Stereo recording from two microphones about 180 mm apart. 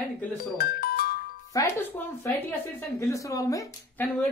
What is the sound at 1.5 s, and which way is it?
A woman's voice, 15° left (ahead or behind).